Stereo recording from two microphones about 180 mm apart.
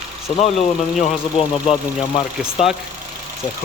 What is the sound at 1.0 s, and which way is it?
Speech, 35° left (ahead or behind).